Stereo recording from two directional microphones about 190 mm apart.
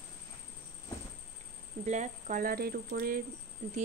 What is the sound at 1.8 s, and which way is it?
Speech, 40° right (ahead or behind).